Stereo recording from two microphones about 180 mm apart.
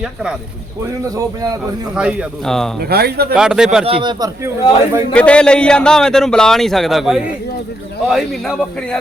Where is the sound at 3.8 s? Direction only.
25° right (ahead or behind).